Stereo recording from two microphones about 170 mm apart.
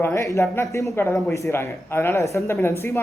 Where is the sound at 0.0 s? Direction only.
15° left (ahead or behind).